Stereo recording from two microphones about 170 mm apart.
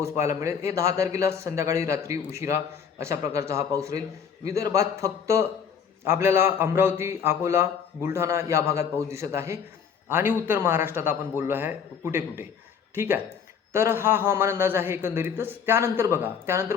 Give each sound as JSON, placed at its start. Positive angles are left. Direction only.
{"t": 0.0, "sound": "a man's voice", "side_deg": -15}